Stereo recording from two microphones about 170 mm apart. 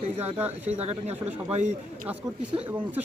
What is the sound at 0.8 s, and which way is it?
Speech, 40° right (ahead or behind).